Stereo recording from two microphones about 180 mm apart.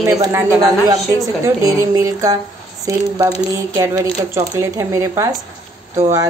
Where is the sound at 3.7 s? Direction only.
15° right (ahead or behind).